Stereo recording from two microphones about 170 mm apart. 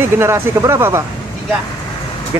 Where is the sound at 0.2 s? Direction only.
15° right (ahead or behind).